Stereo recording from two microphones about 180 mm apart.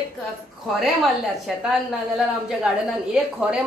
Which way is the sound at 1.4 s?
5° right (ahead or behind).